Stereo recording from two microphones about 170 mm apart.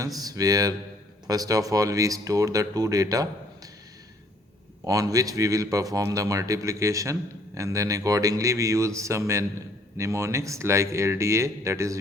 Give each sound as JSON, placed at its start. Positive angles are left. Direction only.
{"t": 0.2, "sound": "a man's voice", "side_deg": -20}
{"t": 4.9, "sound": "a man's voice", "side_deg": -20}